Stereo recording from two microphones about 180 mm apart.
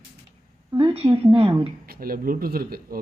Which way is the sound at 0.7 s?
35° right (ahead or behind).